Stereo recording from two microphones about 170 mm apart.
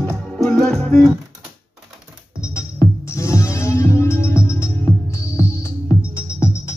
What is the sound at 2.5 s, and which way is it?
Music, 15° left (ahead or behind).